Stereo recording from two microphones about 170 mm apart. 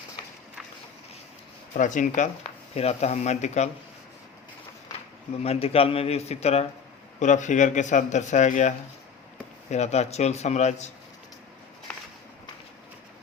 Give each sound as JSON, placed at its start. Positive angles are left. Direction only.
{"t": 1.7, "sound": "speech", "side_deg": 50}
{"t": 5.4, "sound": "a man's voice", "side_deg": 35}